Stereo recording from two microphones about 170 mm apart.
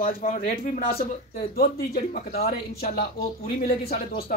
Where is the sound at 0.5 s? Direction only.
55° left (ahead or behind).